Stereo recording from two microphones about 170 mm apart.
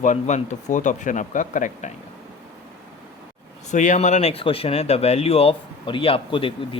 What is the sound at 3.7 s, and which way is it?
Speech, 45° left (ahead or behind).